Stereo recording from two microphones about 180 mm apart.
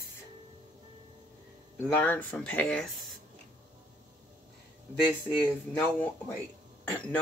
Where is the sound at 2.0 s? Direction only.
10° left (ahead or behind).